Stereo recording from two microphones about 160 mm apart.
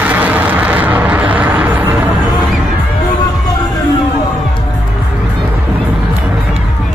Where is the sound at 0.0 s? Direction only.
10° right (ahead or behind).